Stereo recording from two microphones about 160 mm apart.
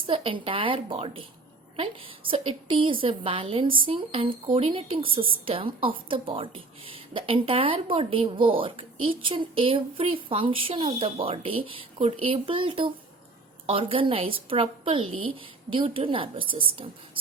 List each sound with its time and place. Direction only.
0.1 s a woman's voice: 35° right (ahead or behind)